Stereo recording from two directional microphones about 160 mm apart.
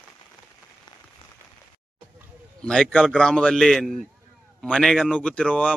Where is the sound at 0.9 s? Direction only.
25° left (ahead or behind).